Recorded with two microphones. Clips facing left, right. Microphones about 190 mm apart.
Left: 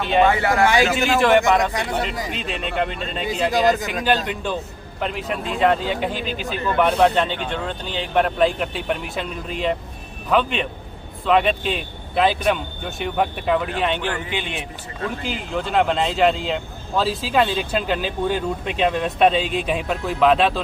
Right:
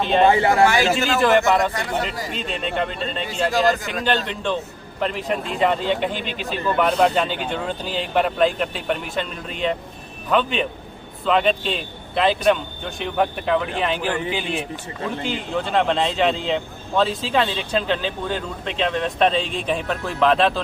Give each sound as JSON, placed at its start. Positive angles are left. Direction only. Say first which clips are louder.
{"t": 0.3, "sound": "speech", "louder": "right 3 dB", "side_deg": -25}
{"t": 0.9, "sound": "speech", "louder": "left 1 dB", "side_deg": 0}